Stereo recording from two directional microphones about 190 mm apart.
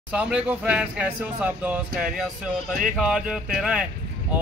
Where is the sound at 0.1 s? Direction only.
5° right (ahead or behind).